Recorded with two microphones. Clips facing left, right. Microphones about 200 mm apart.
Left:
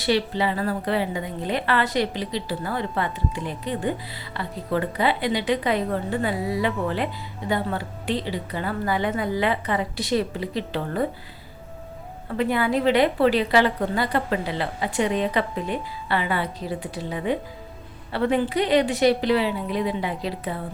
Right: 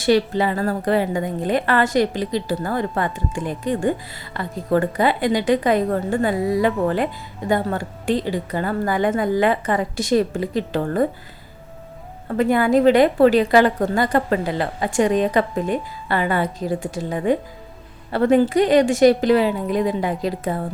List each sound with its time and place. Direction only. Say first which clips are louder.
0.0 s a woman's voice: right 5 dB; 45° right (ahead or behind)
12.4 s a woman's voice: right 6 dB; 45° right (ahead or behind)